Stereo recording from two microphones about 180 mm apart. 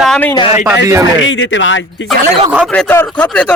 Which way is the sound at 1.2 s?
90° left.